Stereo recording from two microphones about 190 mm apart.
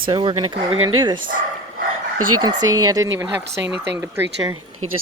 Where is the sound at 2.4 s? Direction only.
20° right (ahead or behind).